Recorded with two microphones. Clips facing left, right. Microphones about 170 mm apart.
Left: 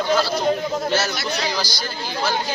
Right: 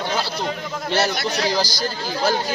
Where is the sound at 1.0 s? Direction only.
40° right (ahead or behind).